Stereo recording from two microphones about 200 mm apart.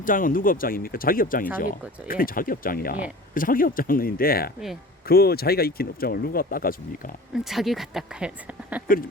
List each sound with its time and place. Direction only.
0.0 s speech: 45° left (ahead or behind)
7.3 s speech: centre (ahead or behind)